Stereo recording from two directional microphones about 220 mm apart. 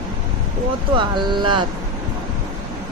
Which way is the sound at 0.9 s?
20° right (ahead or behind).